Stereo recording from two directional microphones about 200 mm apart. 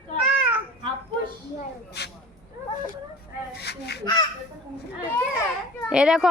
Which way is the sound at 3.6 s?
55° left (ahead or behind).